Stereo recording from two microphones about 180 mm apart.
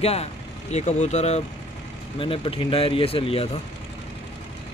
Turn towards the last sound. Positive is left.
turn(degrees=30)  # may be behind; listen again after turning